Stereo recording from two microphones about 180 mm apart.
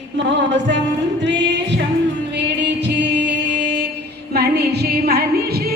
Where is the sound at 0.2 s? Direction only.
80° right.